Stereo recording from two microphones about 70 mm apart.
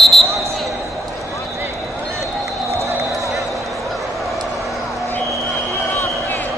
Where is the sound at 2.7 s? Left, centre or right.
Right.